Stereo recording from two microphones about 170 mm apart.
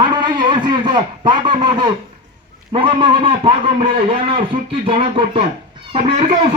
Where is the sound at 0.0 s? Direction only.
30° right (ahead or behind).